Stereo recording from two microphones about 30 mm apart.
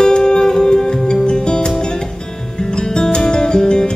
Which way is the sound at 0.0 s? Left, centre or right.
Left.